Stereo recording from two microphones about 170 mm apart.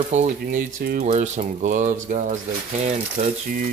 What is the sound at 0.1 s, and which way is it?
Speech, 45° right (ahead or behind).